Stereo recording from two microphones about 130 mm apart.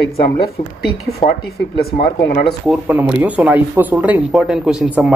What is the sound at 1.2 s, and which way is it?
Speech, 50° left (ahead or behind).